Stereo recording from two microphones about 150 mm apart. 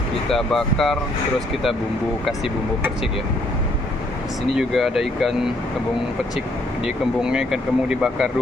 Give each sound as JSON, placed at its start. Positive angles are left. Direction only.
{"t": 0.3, "sound": "speech", "side_deg": 5}
{"t": 4.6, "sound": "speech", "side_deg": 0}
{"t": 7.2, "sound": "speech", "side_deg": -5}